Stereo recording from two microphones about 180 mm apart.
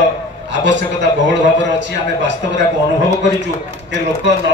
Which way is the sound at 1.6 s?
85° right.